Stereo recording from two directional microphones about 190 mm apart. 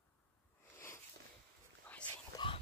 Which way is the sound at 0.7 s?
15° left (ahead or behind).